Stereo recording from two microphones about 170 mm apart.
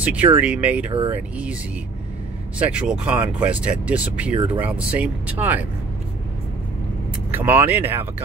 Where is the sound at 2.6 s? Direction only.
5° right (ahead or behind).